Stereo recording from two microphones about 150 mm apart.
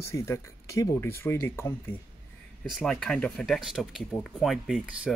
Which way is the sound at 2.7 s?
Centre (ahead or behind).